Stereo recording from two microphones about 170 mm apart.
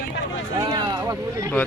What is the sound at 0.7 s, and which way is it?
Speech, 20° right (ahead or behind).